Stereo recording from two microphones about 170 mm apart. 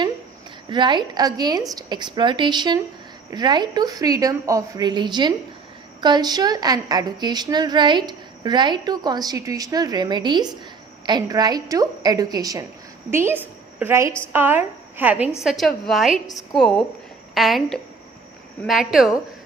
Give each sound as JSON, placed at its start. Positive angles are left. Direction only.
{"t": 0.7, "sound": "a woman's voice", "side_deg": -25}